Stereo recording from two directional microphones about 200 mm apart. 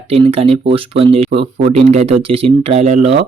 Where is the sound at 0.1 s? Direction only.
30° right (ahead or behind).